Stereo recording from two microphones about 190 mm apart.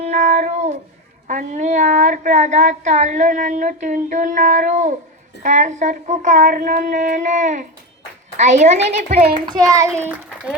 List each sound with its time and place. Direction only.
0.0 s music: 35° right (ahead or behind)
1.3 s speech: 40° right (ahead or behind)
9.3 s a child's voice: 20° right (ahead or behind)